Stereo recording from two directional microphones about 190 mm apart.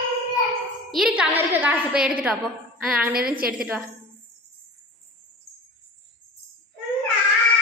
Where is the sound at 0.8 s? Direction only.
Centre (ahead or behind).